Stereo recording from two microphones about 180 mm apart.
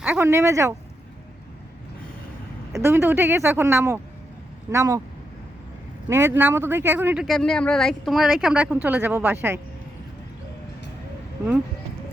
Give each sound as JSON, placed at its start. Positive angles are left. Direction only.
{"t": 0.0, "sound": "speech", "side_deg": -10}
{"t": 2.7, "sound": "speech", "side_deg": -15}
{"t": 6.1, "sound": "speech", "side_deg": -15}